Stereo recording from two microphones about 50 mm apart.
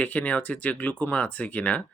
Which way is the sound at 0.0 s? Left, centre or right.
Left.